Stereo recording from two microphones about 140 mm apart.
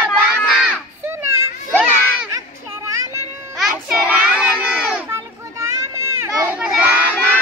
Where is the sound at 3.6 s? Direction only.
10° right (ahead or behind).